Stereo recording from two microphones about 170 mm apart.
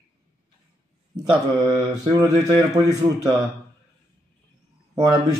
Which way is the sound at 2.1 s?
20° right (ahead or behind).